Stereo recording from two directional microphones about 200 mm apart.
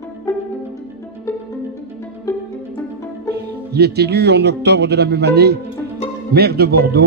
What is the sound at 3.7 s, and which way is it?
A man's voice, 55° right (ahead or behind).